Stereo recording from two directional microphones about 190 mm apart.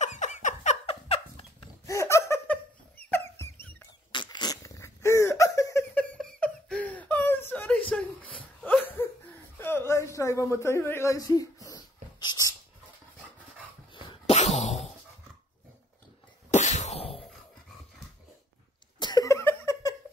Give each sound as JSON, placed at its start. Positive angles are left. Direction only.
{"t": 0.0, "sound": "a sound", "side_deg": 40}
{"t": 1.9, "sound": "laughter", "side_deg": 15}
{"t": 3.1, "sound": "dog", "side_deg": 10}
{"t": 4.1, "sound": "dog", "side_deg": 25}
{"t": 6.1, "sound": "whimper", "side_deg": 5}
{"t": 8.8, "sound": "a sound", "side_deg": 10}
{"t": 13.9, "sound": "cough", "side_deg": 35}
{"t": 16.4, "sound": "cough", "side_deg": 40}
{"t": 17.1, "sound": "dog", "side_deg": 0}
{"t": 18.9, "sound": "laughter", "side_deg": 20}